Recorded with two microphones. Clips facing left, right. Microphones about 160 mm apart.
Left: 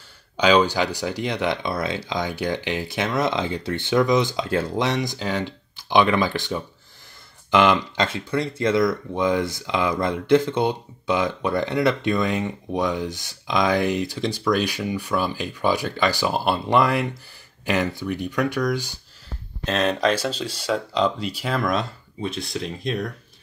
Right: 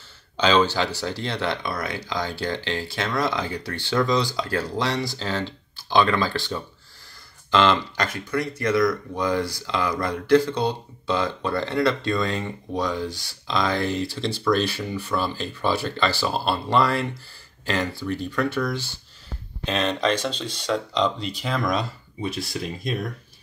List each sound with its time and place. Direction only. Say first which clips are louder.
0.4 s speech: left 2 dB; 10° left (ahead or behind)